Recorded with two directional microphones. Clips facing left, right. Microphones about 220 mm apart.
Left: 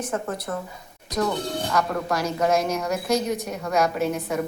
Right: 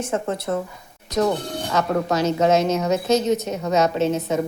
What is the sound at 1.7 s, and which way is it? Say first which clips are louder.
A woman's voice: right 5 dB; 20° right (ahead or behind).